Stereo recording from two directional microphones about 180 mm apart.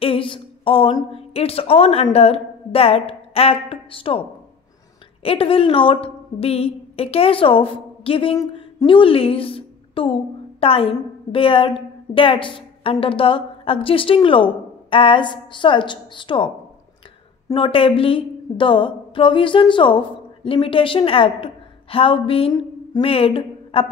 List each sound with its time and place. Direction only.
0.0 s a woman's voice: 30° left (ahead or behind)
5.2 s a woman's voice: 30° left (ahead or behind)
17.5 s a woman's voice: 30° left (ahead or behind)